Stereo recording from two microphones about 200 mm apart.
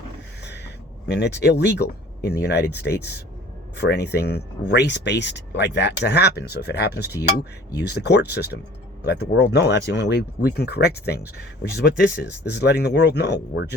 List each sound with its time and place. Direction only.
1.0 s speech: 55° left (ahead or behind)